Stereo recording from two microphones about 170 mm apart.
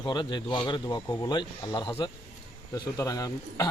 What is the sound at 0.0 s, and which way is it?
Speech, 25° left (ahead or behind).